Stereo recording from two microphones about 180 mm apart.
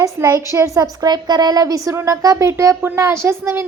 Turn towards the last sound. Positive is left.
turn(degrees=-15)  # may be behind; listen again after turning